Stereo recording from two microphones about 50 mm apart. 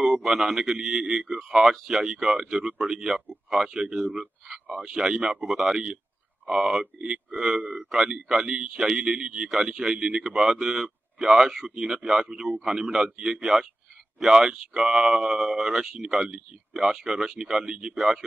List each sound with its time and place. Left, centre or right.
0.0 s speech: centre
3.1 s speech: centre
5.5 s speech: centre